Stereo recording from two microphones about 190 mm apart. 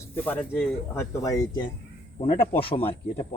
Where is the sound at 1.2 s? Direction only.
20° left (ahead or behind).